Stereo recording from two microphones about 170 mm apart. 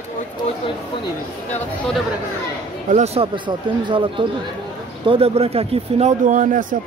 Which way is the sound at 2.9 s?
40° right (ahead or behind).